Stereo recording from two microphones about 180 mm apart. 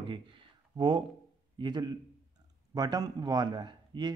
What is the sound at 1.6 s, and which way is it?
Speech, 25° right (ahead or behind).